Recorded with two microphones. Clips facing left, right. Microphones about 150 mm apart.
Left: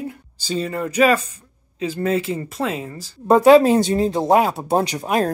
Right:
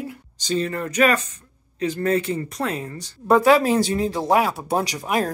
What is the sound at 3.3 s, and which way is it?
Speech, 20° left (ahead or behind).